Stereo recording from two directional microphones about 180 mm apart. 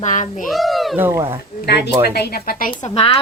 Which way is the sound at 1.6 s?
65° left (ahead or behind).